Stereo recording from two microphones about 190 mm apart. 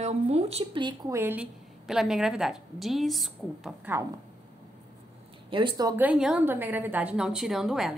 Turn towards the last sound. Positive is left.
turn(degrees=0)  # may be behind; listen again after turning